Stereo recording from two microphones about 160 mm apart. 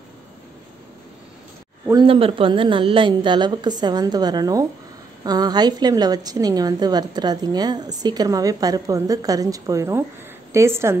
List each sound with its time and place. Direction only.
2.0 s a woman's voice: 35° right (ahead or behind); by 11.0 s 15° right (ahead or behind)